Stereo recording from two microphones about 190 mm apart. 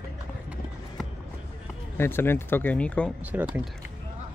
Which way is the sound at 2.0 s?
10° left (ahead or behind).